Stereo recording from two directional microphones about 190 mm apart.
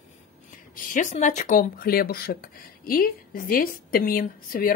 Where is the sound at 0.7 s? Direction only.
45° left (ahead or behind).